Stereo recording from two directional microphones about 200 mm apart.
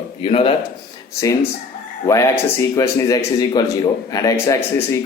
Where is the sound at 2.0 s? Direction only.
15° left (ahead or behind).